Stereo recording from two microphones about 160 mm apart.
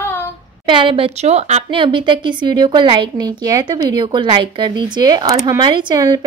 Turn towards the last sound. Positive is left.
turn(degrees=-25)  # may be behind; listen again after turning